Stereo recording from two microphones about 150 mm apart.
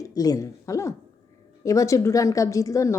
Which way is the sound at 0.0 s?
25° left (ahead or behind).